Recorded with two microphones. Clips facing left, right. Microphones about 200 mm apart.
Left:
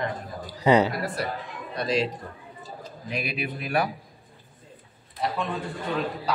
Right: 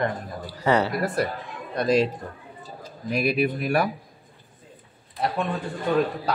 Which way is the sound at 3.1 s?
45° right (ahead or behind).